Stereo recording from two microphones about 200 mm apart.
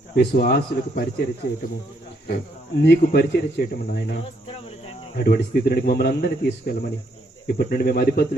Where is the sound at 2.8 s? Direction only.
55° left (ahead or behind).